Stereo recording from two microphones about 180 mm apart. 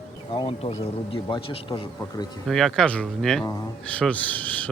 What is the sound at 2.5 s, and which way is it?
Speech, centre (ahead or behind).